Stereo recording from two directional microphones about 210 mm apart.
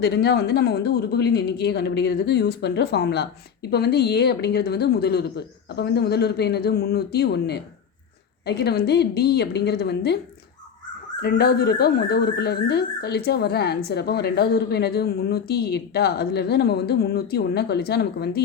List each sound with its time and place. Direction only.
0.0 s speech: 50° left (ahead or behind)
11.2 s speech: 50° left (ahead or behind)